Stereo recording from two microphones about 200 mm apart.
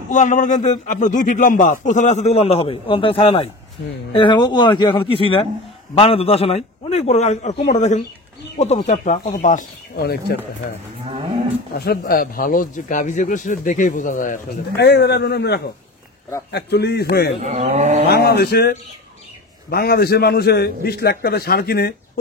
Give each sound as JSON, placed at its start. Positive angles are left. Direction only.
{"t": 0.1, "sound": "a man's voice", "side_deg": 40}
{"t": 9.9, "sound": "a man's voice", "side_deg": 55}
{"t": 11.7, "sound": "speech", "side_deg": 50}
{"t": 14.8, "sound": "a man's voice", "side_deg": 55}
{"t": 17.4, "sound": "speech", "side_deg": -35}
{"t": 18.0, "sound": "a man's voice", "side_deg": 50}